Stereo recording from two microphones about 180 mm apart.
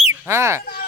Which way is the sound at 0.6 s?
55° left (ahead or behind).